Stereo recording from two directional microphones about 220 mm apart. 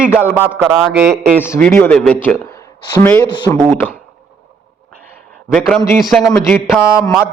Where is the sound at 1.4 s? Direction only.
10° left (ahead or behind).